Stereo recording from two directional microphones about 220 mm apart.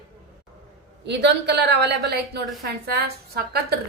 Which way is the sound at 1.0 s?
50° right (ahead or behind).